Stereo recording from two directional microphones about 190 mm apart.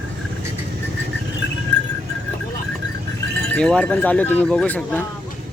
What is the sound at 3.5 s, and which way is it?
Speech, 5° left (ahead or behind).